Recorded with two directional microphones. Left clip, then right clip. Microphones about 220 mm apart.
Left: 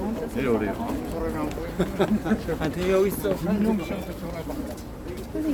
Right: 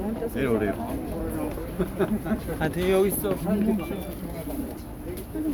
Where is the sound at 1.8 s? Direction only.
50° left (ahead or behind).